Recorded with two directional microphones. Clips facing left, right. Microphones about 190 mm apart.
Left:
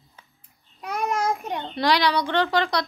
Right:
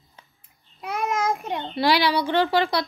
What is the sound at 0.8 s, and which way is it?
A woman's voice, 5° right (ahead or behind).